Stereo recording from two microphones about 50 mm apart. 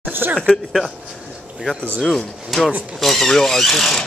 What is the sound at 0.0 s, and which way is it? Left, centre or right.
Speech, right.